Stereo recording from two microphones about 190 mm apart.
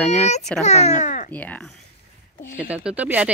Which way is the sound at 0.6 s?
40° left (ahead or behind).